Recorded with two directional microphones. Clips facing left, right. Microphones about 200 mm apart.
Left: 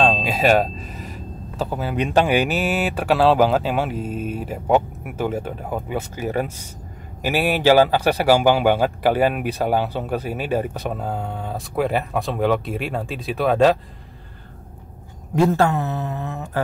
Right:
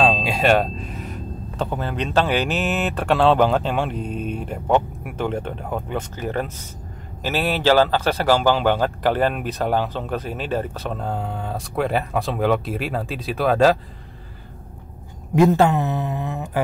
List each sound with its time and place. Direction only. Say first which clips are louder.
0.0 s a man's voice: even; centre (ahead or behind)
15.3 s speech: right 2 dB; 15° right (ahead or behind)